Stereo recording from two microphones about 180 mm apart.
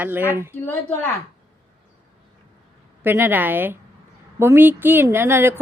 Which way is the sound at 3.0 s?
10° right (ahead or behind).